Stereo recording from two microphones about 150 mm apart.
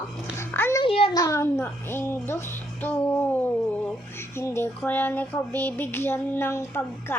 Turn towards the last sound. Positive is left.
turn(degrees=15)  # may be behind; listen again after turning